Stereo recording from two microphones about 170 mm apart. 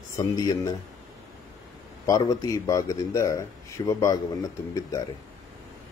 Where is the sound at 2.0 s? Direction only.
20° left (ahead or behind).